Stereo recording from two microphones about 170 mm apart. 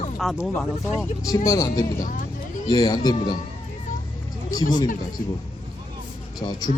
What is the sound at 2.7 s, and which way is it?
Speech, 20° left (ahead or behind).